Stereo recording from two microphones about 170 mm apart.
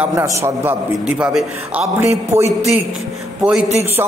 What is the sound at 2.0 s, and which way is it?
Speech, 15° right (ahead or behind).